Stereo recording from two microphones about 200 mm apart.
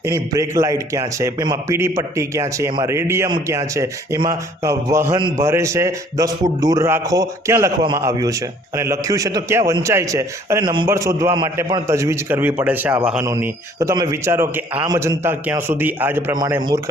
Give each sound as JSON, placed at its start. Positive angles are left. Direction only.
{"t": 0.0, "sound": "a man's voice", "side_deg": -15}